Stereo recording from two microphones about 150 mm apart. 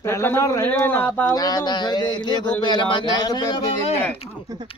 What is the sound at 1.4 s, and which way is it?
Speech, 25° left (ahead or behind).